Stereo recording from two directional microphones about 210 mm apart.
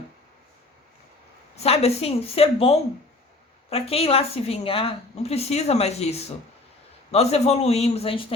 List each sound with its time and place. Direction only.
1.5 s a woman's voice: 30° left (ahead or behind)